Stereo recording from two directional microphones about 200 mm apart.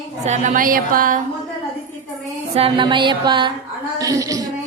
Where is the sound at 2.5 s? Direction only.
25° right (ahead or behind).